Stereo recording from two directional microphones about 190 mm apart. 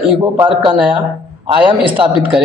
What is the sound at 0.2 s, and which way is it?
A woman's voice, 20° right (ahead or behind).